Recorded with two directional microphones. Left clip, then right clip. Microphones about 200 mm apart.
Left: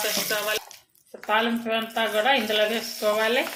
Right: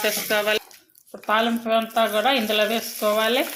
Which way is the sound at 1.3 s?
30° right (ahead or behind).